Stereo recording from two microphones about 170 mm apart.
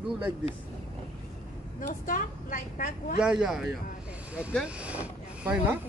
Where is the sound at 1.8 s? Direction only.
55° left (ahead or behind).